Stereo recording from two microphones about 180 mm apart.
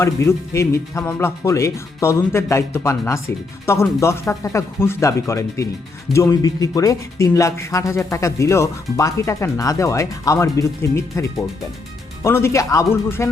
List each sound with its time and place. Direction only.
0.0 s speech: 15° left (ahead or behind)